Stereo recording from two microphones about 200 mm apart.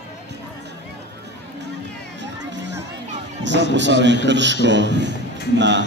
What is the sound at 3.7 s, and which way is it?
A man's voice, 60° right (ahead or behind).